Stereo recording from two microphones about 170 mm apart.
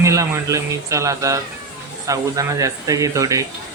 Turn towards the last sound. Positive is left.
turn(degrees=-20)  # may be behind; listen again after turning